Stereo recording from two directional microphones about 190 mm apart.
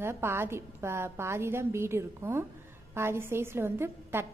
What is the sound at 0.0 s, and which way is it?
A woman's voice, 15° right (ahead or behind).